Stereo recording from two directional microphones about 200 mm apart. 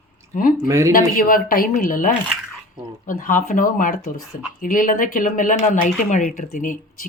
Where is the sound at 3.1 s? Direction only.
40° left (ahead or behind).